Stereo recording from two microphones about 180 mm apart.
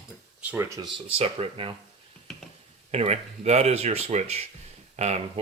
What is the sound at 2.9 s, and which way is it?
Speech, 35° right (ahead or behind).